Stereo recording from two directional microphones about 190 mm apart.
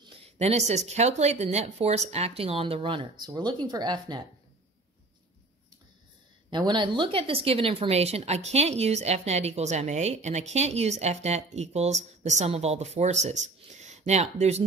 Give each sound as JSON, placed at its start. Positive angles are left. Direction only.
{"t": 0.0, "sound": "a woman's voice", "side_deg": -35}
{"t": 6.5, "sound": "a woman's voice", "side_deg": -25}